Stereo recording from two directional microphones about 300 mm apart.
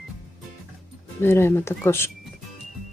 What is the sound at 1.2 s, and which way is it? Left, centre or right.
Speech, centre.